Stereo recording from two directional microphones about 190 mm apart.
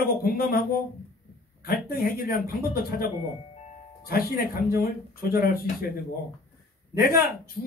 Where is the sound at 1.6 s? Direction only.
50° left (ahead or behind).